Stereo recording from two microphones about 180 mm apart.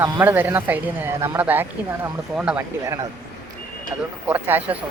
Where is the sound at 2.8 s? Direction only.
20° right (ahead or behind).